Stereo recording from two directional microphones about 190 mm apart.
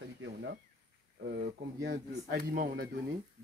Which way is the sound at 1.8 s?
55° right (ahead or behind).